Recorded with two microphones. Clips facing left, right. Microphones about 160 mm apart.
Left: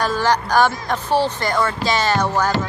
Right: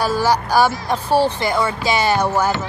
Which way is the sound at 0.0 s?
10° right (ahead or behind).